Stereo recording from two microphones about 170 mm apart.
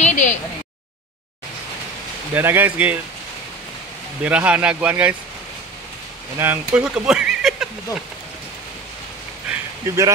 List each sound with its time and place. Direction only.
0.0 s a sound: 45° left (ahead or behind)
2.3 s speech: 10° right (ahead or behind)
4.2 s speech: 10° right (ahead or behind)
6.3 s speech: 10° right (ahead or behind)
9.8 s speech: 20° right (ahead or behind)